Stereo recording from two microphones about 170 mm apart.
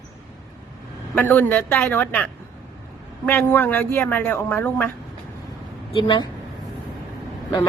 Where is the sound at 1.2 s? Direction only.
10° left (ahead or behind).